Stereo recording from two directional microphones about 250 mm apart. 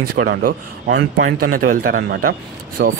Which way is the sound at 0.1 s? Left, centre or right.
Right.